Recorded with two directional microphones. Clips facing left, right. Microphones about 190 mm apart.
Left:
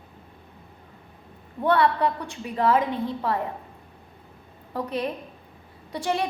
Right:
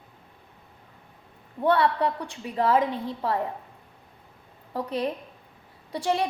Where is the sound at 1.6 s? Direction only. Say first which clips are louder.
Left 1 dB; 30° right (ahead or behind).